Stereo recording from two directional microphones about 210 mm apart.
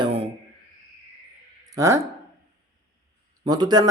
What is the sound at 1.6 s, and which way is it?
Speech, 15° right (ahead or behind).